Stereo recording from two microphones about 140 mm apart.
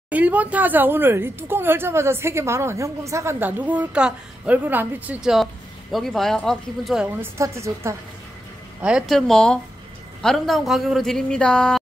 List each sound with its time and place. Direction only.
0.1 s a woman's voice: 10° right (ahead or behind)
7.2 s a woman's voice: 20° right (ahead or behind)
8.8 s a man's voice: 5° right (ahead or behind)